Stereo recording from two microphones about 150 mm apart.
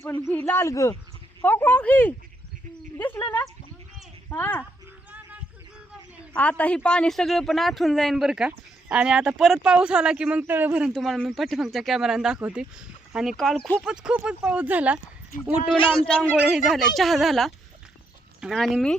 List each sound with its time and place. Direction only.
0.0 s speech: 15° left (ahead or behind)
4.3 s speech: 10° left (ahead or behind)
6.3 s speech: 10° left (ahead or behind); by 15.7 s 5° right (ahead or behind)
16.0 s speech: 10° left (ahead or behind)